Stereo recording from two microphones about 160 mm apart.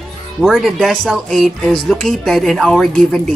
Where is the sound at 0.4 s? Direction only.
5° right (ahead or behind).